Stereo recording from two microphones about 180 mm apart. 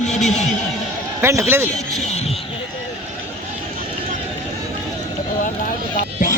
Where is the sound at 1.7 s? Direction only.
40° left (ahead or behind).